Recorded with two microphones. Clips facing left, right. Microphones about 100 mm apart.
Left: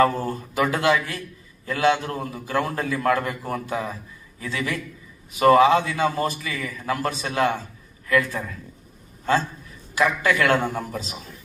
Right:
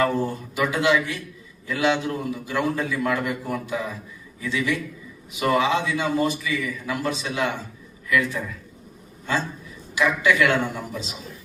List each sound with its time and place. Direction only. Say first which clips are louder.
0.5 s a man's voice: left 1 dB; 40° left (ahead or behind)
9.9 s a man's voice: even; 40° left (ahead or behind)